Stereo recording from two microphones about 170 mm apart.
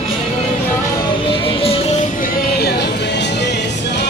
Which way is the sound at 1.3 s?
35° left (ahead or behind).